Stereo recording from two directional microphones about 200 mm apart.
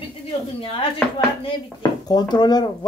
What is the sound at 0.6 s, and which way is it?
Speech, 25° left (ahead or behind).